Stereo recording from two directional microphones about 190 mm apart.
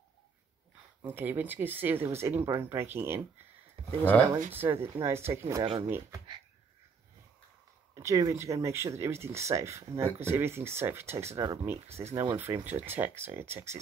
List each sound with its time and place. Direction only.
1.0 s speech: 10° right (ahead or behind)
3.8 s a sound: 30° right (ahead or behind)
4.5 s speech: 10° right (ahead or behind)
5.5 s speech: 25° right (ahead or behind)
7.9 s speech: 15° right (ahead or behind)
11.9 s speech: 35° right (ahead or behind)
12.2 s speech: 15° right (ahead or behind)